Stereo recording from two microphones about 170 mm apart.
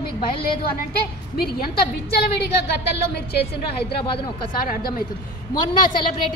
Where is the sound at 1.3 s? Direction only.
65° left (ahead or behind).